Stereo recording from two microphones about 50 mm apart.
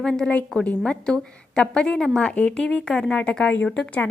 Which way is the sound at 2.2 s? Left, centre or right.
Left.